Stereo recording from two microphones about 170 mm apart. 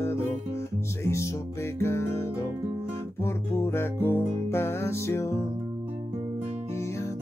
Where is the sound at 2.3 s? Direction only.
10° right (ahead or behind).